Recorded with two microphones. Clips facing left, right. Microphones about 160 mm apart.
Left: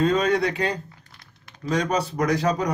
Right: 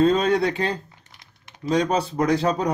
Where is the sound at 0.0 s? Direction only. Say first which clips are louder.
Right 2 dB; 30° right (ahead or behind).